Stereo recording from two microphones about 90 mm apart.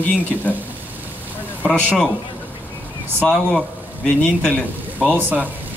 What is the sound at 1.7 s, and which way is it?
Speech, 10° left (ahead or behind).